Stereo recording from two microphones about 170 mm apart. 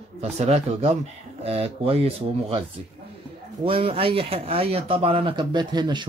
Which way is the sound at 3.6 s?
35° right (ahead or behind).